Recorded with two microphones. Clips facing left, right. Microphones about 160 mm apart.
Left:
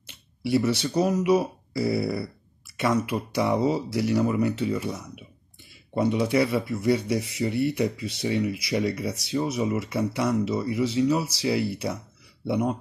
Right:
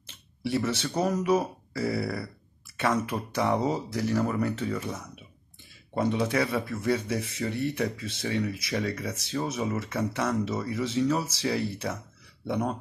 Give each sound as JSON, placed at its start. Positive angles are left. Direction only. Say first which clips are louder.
{"t": 0.1, "sound": "speech", "louder": "left 5 dB", "side_deg": 10}
{"t": 3.1, "sound": "speech", "louder": "left 2 dB", "side_deg": 10}